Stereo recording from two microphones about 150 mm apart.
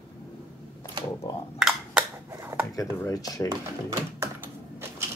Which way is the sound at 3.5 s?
20° right (ahead or behind).